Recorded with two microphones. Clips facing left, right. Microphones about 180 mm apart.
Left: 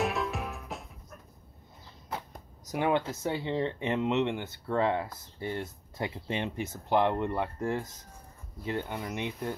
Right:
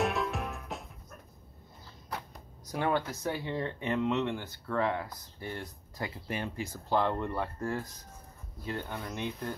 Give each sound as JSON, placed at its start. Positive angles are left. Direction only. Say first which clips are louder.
{"t": 0.0, "sound": "music", "louder": "even", "side_deg": 0}
{"t": 2.7, "sound": "speech", "louder": "left 2 dB", "side_deg": 20}